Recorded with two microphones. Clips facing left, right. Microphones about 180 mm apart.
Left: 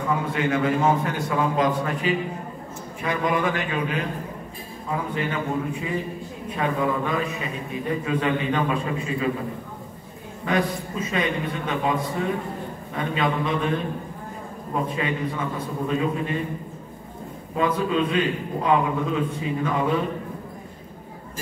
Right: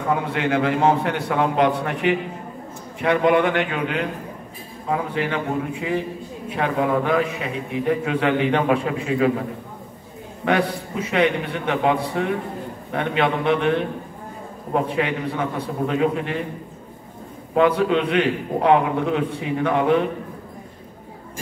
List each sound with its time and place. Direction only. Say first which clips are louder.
0.2 s a man's voice: right 2 dB; 70° right (ahead or behind)
10.4 s a man's voice: right 3 dB; 70° right (ahead or behind)
17.6 s a man's voice: right 5 dB; 75° right (ahead or behind)